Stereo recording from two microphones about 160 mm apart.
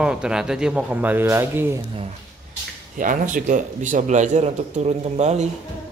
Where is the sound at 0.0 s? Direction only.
5° right (ahead or behind).